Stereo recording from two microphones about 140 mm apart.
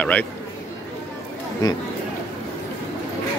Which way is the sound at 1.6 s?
30° left (ahead or behind).